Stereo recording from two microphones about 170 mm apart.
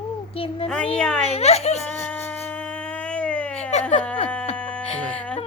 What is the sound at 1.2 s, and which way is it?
Speech, 40° left (ahead or behind).